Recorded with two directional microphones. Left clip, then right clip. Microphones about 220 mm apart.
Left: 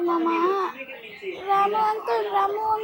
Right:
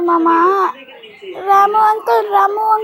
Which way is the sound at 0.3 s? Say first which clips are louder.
Right 11 dB; 30° right (ahead or behind).